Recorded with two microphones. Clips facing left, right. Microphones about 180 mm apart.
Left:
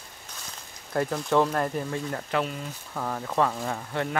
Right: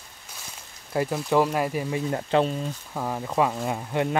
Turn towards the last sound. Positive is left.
turn(degrees=-15)  # may be behind; listen again after turning